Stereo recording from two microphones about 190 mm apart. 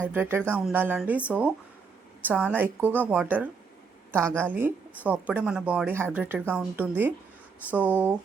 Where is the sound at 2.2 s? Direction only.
10° right (ahead or behind).